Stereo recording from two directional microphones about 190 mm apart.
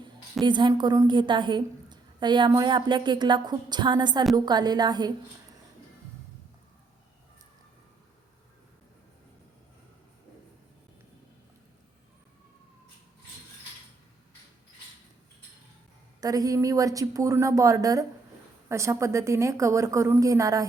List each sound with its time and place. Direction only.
0.4 s a woman's voice: 25° right (ahead or behind)
16.2 s a woman's voice: 20° right (ahead or behind)